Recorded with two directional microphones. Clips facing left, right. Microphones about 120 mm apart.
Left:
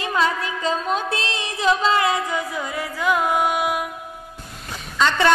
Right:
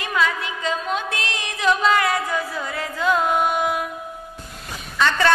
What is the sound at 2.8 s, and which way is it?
Music, 15° left (ahead or behind).